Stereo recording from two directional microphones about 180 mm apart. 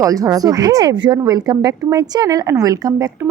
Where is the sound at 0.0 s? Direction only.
20° right (ahead or behind).